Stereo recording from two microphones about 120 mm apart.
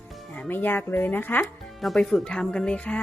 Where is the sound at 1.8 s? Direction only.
Centre (ahead or behind).